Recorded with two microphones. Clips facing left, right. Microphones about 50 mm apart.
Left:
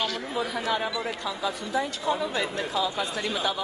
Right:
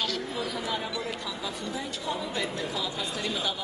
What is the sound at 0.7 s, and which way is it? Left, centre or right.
Speech, left.